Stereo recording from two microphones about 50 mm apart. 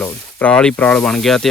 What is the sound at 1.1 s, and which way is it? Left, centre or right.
Speech, centre.